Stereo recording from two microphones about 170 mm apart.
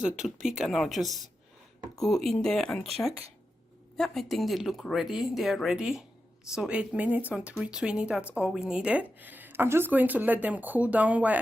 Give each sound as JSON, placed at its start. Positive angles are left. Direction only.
{"t": 0.4, "sound": "speech", "side_deg": 0}
{"t": 3.9, "sound": "a woman's voice", "side_deg": 0}